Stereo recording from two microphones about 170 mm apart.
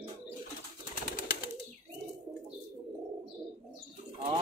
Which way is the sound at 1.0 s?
55° left (ahead or behind).